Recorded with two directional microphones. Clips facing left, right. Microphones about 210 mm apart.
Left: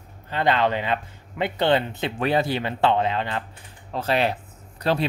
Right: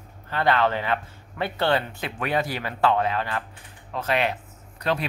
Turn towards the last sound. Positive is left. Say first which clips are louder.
# left 3 dB
turn(degrees=30)  # may be behind; listen again after turning